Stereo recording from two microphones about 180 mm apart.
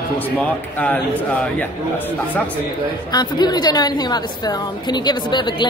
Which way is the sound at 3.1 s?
25° left (ahead or behind).